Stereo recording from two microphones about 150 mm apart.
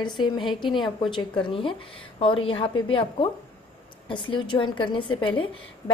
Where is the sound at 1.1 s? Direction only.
35° left (ahead or behind).